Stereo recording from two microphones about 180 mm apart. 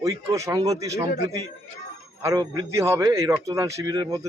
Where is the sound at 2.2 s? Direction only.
20° right (ahead or behind).